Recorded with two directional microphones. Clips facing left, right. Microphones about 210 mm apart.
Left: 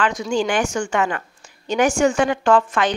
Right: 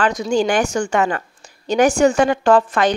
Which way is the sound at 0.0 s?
40° right (ahead or behind).